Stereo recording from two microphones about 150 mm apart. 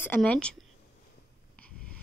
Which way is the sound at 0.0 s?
10° left (ahead or behind).